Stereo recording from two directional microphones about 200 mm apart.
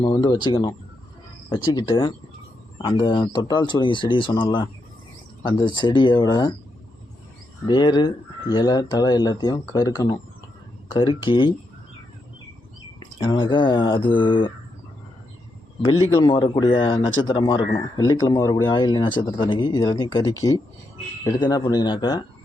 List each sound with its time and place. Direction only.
0.0 s speech: 20° left (ahead or behind)
7.7 s speech: 20° left (ahead or behind)
13.0 s speech: 25° left (ahead or behind)
15.8 s speech: 20° left (ahead or behind)